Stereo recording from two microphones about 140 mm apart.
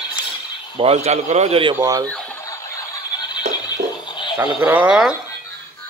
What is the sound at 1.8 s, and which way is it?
Speech, 25° right (ahead or behind).